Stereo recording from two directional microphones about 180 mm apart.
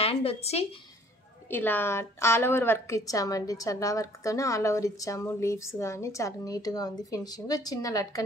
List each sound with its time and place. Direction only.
0.0 s speech: 35° left (ahead or behind)
1.5 s a woman's voice: 10° left (ahead or behind)